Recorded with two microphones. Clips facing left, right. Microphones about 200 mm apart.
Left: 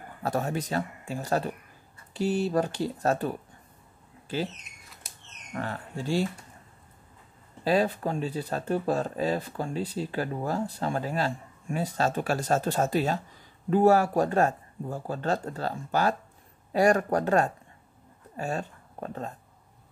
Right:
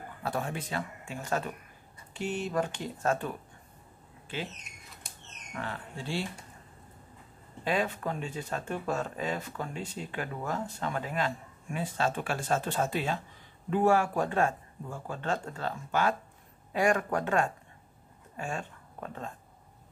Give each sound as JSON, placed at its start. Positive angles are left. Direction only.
{"t": 0.2, "sound": "speech", "side_deg": 40}
{"t": 5.5, "sound": "speech", "side_deg": 40}
{"t": 7.6, "sound": "speech", "side_deg": 35}